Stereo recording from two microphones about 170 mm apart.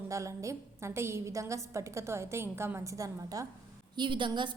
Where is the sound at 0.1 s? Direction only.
20° right (ahead or behind).